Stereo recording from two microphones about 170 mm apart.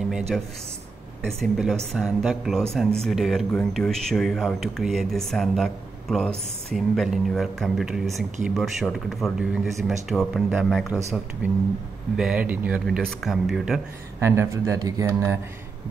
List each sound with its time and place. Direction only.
1.2 s speech: centre (ahead or behind)
14.2 s speech: 15° right (ahead or behind)